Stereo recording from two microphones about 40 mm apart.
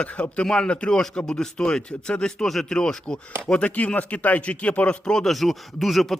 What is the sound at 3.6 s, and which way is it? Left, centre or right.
Speech, left.